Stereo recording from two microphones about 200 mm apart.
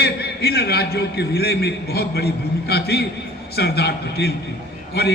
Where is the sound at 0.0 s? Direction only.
50° left (ahead or behind).